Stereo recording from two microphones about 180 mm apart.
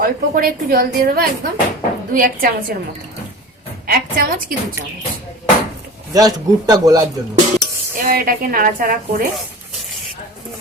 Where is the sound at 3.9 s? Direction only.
55° right (ahead or behind).